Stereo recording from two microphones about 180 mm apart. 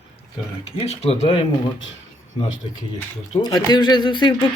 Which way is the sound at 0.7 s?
35° left (ahead or behind).